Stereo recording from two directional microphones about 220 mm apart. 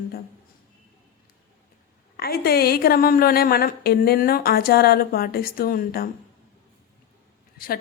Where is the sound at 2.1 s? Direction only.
45° left (ahead or behind).